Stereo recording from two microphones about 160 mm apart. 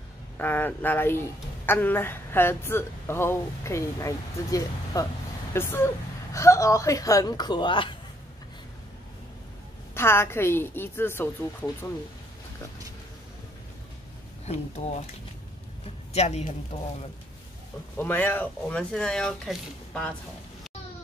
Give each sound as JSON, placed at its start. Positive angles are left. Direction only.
{"t": 0.4, "sound": "a woman's voice", "side_deg": 10}
{"t": 9.9, "sound": "a woman's voice", "side_deg": 15}
{"t": 14.4, "sound": "speech", "side_deg": 45}
{"t": 16.1, "sound": "speech", "side_deg": 45}
{"t": 17.9, "sound": "a woman's voice", "side_deg": 15}